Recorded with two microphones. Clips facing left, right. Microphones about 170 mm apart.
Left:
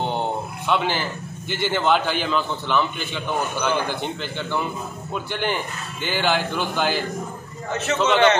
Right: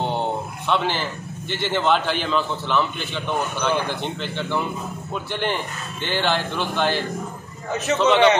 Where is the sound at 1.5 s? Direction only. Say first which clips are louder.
Even; centre (ahead or behind).